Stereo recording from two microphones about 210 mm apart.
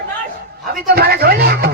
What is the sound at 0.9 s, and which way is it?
Speech, 50° right (ahead or behind).